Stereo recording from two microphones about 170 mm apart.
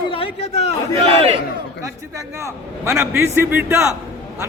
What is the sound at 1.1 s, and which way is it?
Speech, 35° right (ahead or behind).